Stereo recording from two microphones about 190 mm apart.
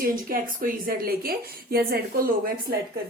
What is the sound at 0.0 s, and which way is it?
Speech, 50° right (ahead or behind).